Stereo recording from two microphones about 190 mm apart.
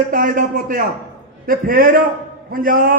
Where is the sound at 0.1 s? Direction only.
45° right (ahead or behind).